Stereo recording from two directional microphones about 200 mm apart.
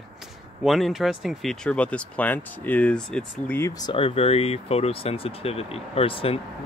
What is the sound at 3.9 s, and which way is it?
Speech, 30° left (ahead or behind).